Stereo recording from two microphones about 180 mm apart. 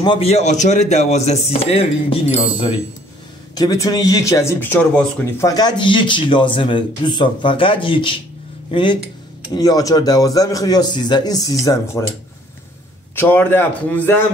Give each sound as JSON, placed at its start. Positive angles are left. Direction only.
{"t": 0.0, "sound": "speech", "side_deg": 30}
{"t": 3.5, "sound": "speech", "side_deg": 20}
{"t": 5.5, "sound": "a man's voice", "side_deg": 25}
{"t": 13.1, "sound": "speech", "side_deg": 10}